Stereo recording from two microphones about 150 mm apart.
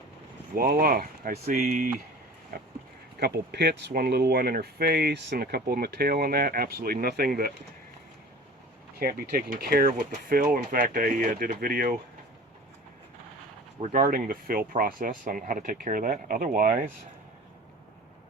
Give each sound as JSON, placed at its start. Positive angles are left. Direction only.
{"t": 0.5, "sound": "speech", "side_deg": -75}
{"t": 1.5, "sound": "speech", "side_deg": -65}
{"t": 3.2, "sound": "speech", "side_deg": -90}
{"t": 9.0, "sound": "speech", "side_deg": -75}
{"t": 13.9, "sound": "speech", "side_deg": -70}